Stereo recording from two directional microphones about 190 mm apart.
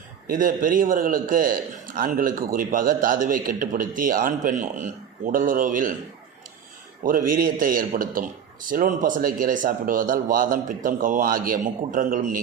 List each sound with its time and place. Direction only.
0.3 s a man's voice: 45° right (ahead or behind)
7.0 s a man's voice: 45° right (ahead or behind)